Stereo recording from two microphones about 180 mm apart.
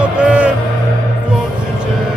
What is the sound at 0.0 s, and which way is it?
Music, 5° right (ahead or behind).